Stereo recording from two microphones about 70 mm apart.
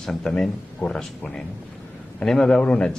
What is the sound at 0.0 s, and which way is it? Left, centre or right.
Speech, centre.